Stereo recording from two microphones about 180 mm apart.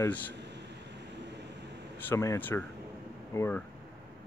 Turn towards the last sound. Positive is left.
turn(degrees=15)  # may be behind; listen again after turning